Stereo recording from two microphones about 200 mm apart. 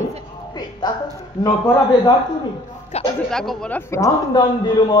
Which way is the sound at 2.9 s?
35° left (ahead or behind).